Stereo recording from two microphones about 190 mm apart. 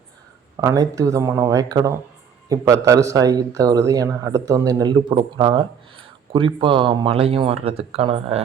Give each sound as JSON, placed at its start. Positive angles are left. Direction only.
{"t": 0.5, "sound": "speech", "side_deg": -15}